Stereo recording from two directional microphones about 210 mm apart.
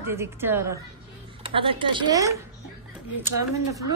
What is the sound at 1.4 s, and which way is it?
Speech, 25° right (ahead or behind).